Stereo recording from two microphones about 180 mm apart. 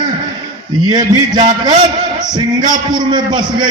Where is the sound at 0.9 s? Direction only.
25° right (ahead or behind).